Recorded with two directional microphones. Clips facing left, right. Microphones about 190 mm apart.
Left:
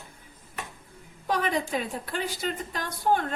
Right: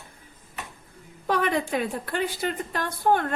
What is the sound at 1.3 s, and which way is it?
A woman's voice, 60° right (ahead or behind).